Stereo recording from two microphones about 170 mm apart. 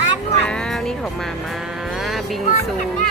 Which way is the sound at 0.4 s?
5° left (ahead or behind).